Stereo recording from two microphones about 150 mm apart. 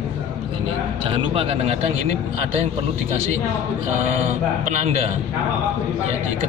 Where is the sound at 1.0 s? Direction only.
40° right (ahead or behind).